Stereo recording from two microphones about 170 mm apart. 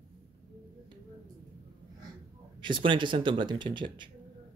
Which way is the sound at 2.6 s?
30° right (ahead or behind).